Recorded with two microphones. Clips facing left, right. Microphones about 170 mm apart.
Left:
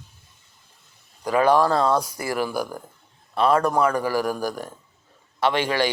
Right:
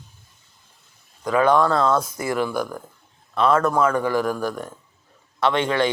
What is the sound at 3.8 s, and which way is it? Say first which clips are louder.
Speech: right 1 dB; 35° left (ahead or behind).